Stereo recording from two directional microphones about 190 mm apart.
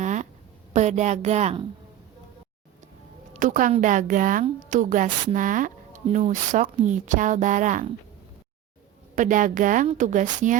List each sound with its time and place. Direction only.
0.0 s a sound: 40° right (ahead or behind)
0.7 s speech: 40° right (ahead or behind)
3.3 s a woman's voice: 40° right (ahead or behind)
9.1 s a woman's voice: 45° right (ahead or behind)